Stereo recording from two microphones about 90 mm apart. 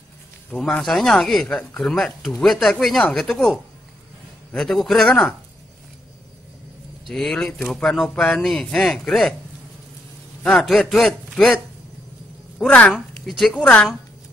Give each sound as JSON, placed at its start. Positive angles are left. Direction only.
{"t": 0.5, "sound": "speech", "side_deg": 5}
{"t": 7.1, "sound": "speech", "side_deg": 5}
{"t": 8.1, "sound": "a man's voice", "side_deg": 20}
{"t": 8.4, "sound": "speech", "side_deg": 5}
{"t": 10.4, "sound": "speech", "side_deg": 0}
{"t": 12.5, "sound": "speech", "side_deg": 15}
{"t": 12.9, "sound": "speech", "side_deg": 0}
{"t": 13.6, "sound": "speech", "side_deg": 15}